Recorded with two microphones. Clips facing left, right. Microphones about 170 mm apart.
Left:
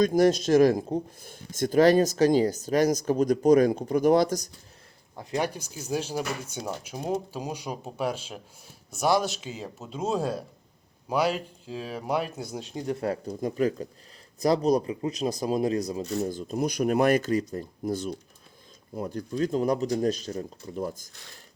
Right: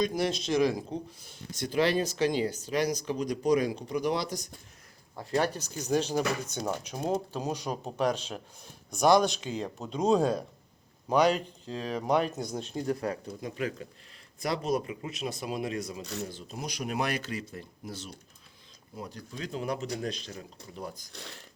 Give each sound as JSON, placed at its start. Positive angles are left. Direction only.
{"t": 0.0, "sound": "speech", "side_deg": 45}
{"t": 5.1, "sound": "speech", "side_deg": 15}
{"t": 12.7, "sound": "speech", "side_deg": 25}
{"t": 13.4, "sound": "speech", "side_deg": 40}